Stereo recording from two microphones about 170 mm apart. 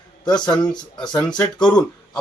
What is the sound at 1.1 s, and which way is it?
Speech, 5° left (ahead or behind).